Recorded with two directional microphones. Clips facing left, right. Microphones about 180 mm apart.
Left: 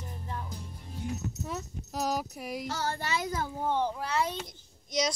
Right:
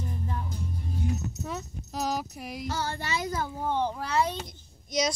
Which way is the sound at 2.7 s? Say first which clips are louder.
Right 2 dB; 40° left (ahead or behind).